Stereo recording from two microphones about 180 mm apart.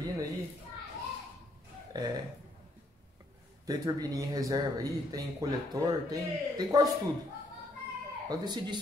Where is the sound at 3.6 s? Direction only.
20° right (ahead or behind).